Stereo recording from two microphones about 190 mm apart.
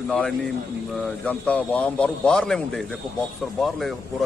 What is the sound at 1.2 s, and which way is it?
A man's voice, 5° left (ahead or behind).